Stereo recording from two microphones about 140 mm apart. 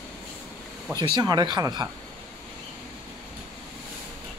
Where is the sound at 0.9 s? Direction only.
30° right (ahead or behind).